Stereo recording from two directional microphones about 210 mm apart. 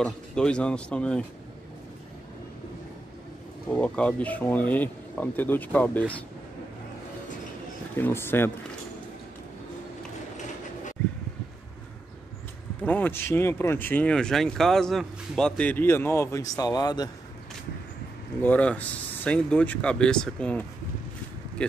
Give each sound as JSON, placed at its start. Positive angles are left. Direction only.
{"t": 0.0, "sound": "speech", "side_deg": 5}
{"t": 3.6, "sound": "speech", "side_deg": 5}
{"t": 7.9, "sound": "speech", "side_deg": 10}
{"t": 10.3, "sound": "a sound", "side_deg": 35}
{"t": 12.8, "sound": "speech", "side_deg": 10}
{"t": 18.4, "sound": "speech", "side_deg": 5}